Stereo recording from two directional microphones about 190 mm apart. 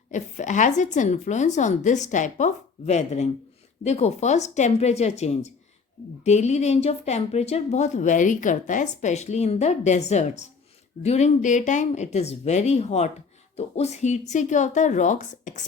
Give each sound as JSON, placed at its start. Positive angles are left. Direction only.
{"t": 0.1, "sound": "a woman's voice", "side_deg": 40}